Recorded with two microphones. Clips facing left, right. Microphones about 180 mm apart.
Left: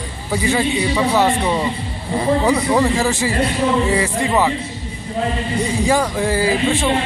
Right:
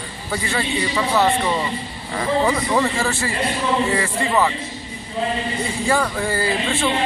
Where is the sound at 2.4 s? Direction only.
10° left (ahead or behind).